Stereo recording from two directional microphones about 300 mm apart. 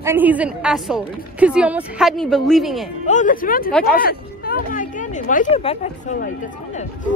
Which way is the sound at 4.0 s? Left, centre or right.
Left.